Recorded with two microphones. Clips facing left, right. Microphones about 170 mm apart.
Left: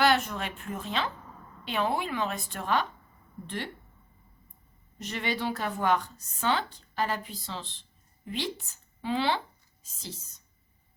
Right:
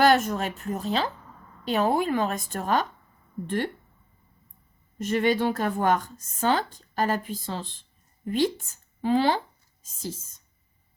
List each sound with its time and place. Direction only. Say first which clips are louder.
0.0 s a woman's voice: right 5 dB; 45° right (ahead or behind)
4.9 s a woman's voice: right 9 dB; 50° right (ahead or behind)